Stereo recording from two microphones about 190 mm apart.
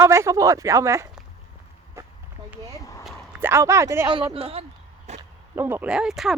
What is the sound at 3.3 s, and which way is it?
Speech, 10° right (ahead or behind).